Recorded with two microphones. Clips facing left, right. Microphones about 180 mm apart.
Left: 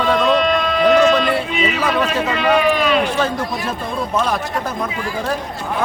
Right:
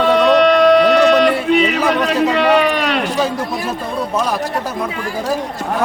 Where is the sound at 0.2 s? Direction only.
70° right (ahead or behind).